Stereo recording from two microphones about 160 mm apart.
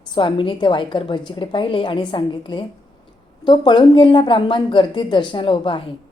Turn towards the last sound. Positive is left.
turn(degrees=30)  # may be behind; listen again after turning